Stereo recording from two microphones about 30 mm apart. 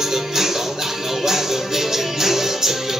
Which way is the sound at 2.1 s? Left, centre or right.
Centre.